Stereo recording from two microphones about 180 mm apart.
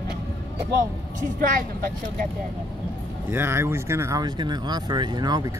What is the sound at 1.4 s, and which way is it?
Speech, 50° right (ahead or behind).